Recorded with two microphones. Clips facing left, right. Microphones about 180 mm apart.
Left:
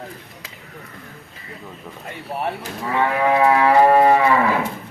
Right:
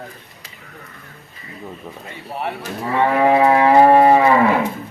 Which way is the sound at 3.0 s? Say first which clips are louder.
Right 3 dB; 25° right (ahead or behind).